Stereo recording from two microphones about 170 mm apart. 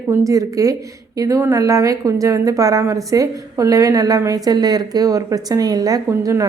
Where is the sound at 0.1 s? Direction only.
20° right (ahead or behind).